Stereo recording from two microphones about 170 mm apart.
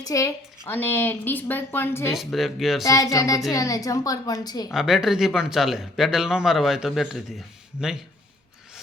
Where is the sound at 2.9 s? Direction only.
20° left (ahead or behind).